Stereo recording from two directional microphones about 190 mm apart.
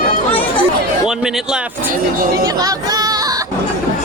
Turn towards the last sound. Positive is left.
turn(degrees=-20)  # may be behind; listen again after turning